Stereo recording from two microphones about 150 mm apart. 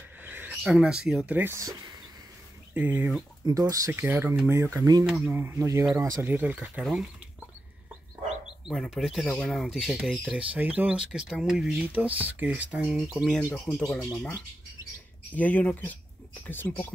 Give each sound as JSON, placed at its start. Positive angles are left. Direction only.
{"t": 0.2, "sound": "speech", "side_deg": -10}
{"t": 3.4, "sound": "speech", "side_deg": -25}
{"t": 5.0, "sound": "speech", "side_deg": -10}
{"t": 8.6, "sound": "speech", "side_deg": -5}
{"t": 15.3, "sound": "speech", "side_deg": 10}